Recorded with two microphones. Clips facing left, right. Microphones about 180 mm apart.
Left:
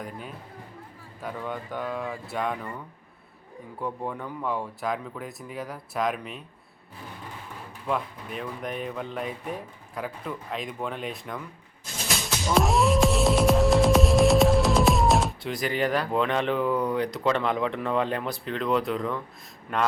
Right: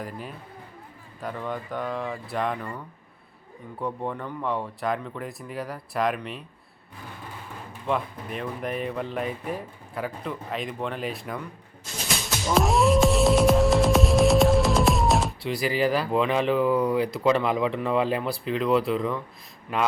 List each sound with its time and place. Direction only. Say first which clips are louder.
0.0 s speech: right 2 dB; centre (ahead or behind)
7.9 s speech: right 2 dB; centre (ahead or behind)
12.5 s music: right 2 dB; centre (ahead or behind)